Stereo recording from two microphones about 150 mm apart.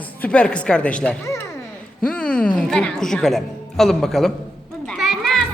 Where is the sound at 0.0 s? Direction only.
10° left (ahead or behind).